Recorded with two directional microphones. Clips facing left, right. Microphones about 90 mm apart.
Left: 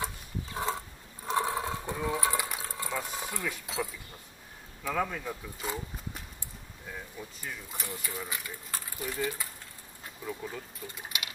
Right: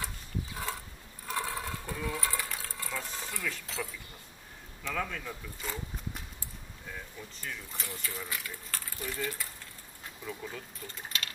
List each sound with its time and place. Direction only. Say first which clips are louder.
1.2 s a sound: left 6 dB; 20° left (ahead or behind)
4.8 s speech: left 4 dB; 15° left (ahead or behind)
6.9 s speech: left 2 dB; 10° left (ahead or behind)